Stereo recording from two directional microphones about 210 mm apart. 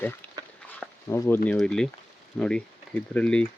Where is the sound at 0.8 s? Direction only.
10° left (ahead or behind).